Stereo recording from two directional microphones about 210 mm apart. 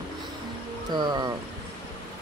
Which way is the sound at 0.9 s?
20° right (ahead or behind).